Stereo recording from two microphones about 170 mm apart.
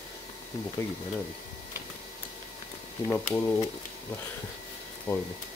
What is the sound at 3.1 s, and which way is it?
Speech, 15° left (ahead or behind).